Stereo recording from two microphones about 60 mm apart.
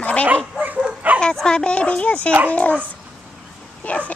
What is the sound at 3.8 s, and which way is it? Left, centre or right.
Bow-wow, left.